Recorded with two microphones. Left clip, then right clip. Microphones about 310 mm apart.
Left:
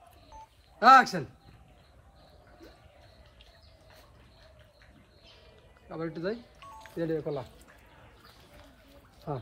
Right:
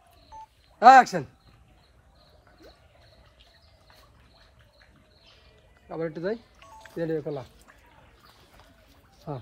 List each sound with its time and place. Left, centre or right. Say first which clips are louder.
0.7 s speech: right 4 dB; centre
5.9 s speech: right 4 dB; centre
9.3 s speech: left 1 dB; right